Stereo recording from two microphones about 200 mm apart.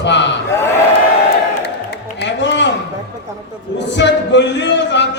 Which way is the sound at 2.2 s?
60° left (ahead or behind).